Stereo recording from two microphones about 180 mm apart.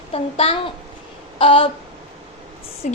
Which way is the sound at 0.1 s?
35° left (ahead or behind).